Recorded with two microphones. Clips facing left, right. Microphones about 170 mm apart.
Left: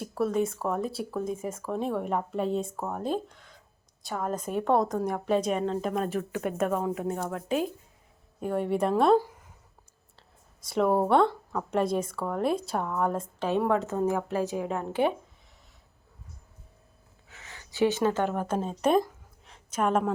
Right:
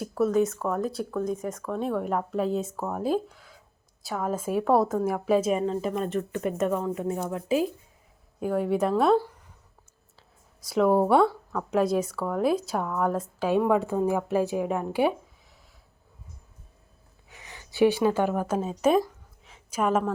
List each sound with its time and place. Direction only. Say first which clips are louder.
0.0 s a woman's voice: right 4 dB; centre (ahead or behind)
10.7 s a woman's voice: right 3 dB; centre (ahead or behind)
17.2 s a sound: right 2 dB; 15° right (ahead or behind)
17.7 s a woman's voice: right 3 dB; 15° right (ahead or behind)